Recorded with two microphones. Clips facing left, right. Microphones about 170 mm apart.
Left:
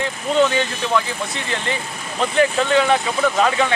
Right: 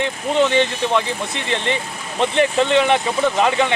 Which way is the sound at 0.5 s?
25° right (ahead or behind).